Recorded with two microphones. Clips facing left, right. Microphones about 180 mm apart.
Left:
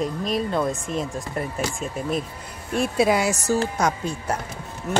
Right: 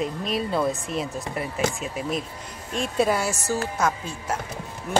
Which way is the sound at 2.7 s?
10° left (ahead or behind).